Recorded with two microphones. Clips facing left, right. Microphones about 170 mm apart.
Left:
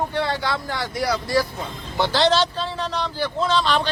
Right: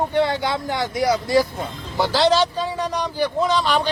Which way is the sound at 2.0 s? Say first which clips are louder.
Right 2 dB; 5° right (ahead or behind).